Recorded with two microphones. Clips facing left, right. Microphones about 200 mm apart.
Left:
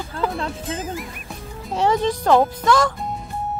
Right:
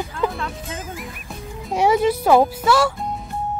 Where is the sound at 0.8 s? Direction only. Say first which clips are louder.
Left 4 dB; centre (ahead or behind).